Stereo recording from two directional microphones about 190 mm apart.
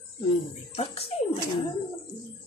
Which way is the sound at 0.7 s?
30° left (ahead or behind).